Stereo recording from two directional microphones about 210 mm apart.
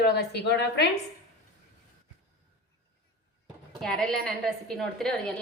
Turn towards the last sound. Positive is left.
turn(degrees=0)  # may be behind; listen again after turning